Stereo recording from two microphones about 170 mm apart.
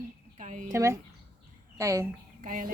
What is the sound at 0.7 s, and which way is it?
A woman's voice, 15° right (ahead or behind).